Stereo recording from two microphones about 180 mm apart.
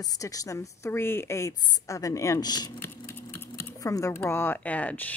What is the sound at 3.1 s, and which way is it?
Speech, 10° left (ahead or behind).